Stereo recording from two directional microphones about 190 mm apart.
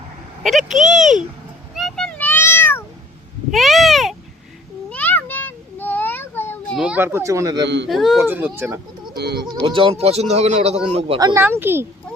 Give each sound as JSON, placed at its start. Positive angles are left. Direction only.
{"t": 0.4, "sound": "speech", "side_deg": 0}
{"t": 1.7, "sound": "meow", "side_deg": 0}
{"t": 3.5, "sound": "a sound", "side_deg": 0}
{"t": 6.7, "sound": "speech", "side_deg": -5}
{"t": 7.6, "sound": "speech", "side_deg": -70}
{"t": 7.9, "sound": "speech", "side_deg": 0}
{"t": 9.1, "sound": "speech", "side_deg": -60}
{"t": 9.6, "sound": "a man's voice", "side_deg": -25}
{"t": 11.2, "sound": "speech", "side_deg": -15}